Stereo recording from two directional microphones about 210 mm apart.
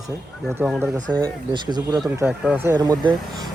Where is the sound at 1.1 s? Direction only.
20° right (ahead or behind).